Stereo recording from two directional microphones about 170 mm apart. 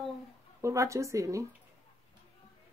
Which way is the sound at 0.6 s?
20° right (ahead or behind).